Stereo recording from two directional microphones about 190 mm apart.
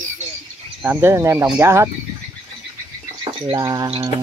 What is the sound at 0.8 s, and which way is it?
Speech, 10° right (ahead or behind).